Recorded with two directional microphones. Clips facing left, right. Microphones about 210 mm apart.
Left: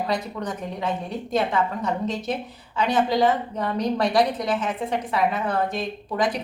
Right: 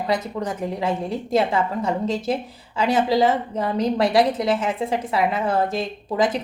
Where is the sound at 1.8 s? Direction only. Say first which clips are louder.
Right 3 dB; 30° right (ahead or behind).